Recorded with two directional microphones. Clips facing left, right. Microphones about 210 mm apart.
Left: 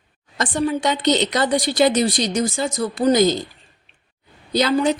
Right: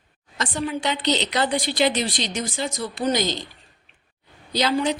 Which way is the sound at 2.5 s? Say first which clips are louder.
Left 5 dB; 45° left (ahead or behind).